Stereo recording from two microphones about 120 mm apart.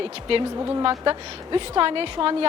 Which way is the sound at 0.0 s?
45° right (ahead or behind).